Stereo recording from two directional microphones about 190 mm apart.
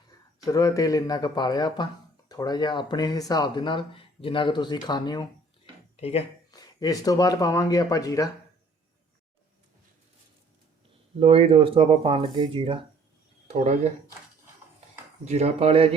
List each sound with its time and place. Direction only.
0.4 s speech: 15° left (ahead or behind)
6.0 s speech: 35° left (ahead or behind)
6.5 s speech: 20° left (ahead or behind)
11.2 s speech: 30° right (ahead or behind)
15.2 s speech: 35° right (ahead or behind)